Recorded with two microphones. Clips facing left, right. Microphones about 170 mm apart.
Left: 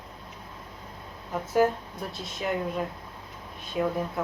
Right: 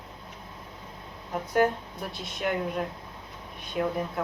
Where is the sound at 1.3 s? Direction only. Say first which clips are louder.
Left 1 dB; centre (ahead or behind).